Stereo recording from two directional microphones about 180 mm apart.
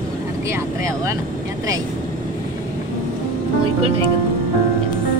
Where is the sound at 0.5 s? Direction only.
15° right (ahead or behind).